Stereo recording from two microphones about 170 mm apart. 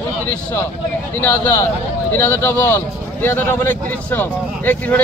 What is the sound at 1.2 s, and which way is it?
Speech, 15° left (ahead or behind).